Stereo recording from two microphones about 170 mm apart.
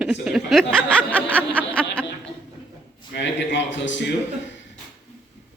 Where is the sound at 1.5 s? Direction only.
5° left (ahead or behind).